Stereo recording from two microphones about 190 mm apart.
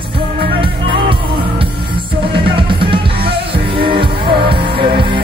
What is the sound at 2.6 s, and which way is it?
Music, 25° right (ahead or behind).